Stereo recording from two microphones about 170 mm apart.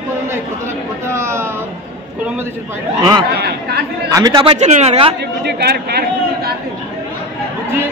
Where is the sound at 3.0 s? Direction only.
25° right (ahead or behind).